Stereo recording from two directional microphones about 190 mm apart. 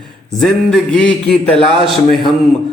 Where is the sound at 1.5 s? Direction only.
25° right (ahead or behind).